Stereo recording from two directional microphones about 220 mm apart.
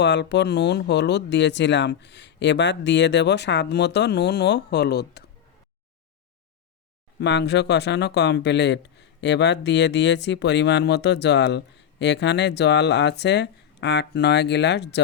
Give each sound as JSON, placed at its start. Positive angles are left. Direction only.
{"t": 0.0, "sound": "speech", "side_deg": 50}
{"t": 7.2, "sound": "speech", "side_deg": 50}